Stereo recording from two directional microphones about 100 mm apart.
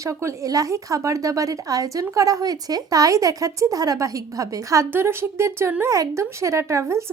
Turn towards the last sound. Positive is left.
turn(degrees=-30)  # may be behind; listen again after turning